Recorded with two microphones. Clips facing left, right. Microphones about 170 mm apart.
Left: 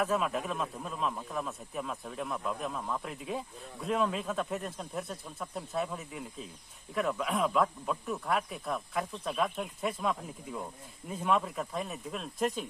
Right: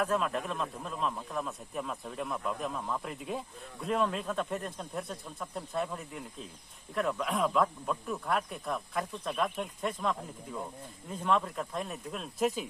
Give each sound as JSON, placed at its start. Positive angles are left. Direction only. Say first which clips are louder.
{"t": 0.0, "sound": "speech", "louder": "even", "side_deg": 5}